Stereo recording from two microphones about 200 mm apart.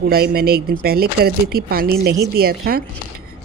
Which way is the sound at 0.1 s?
50° right (ahead or behind).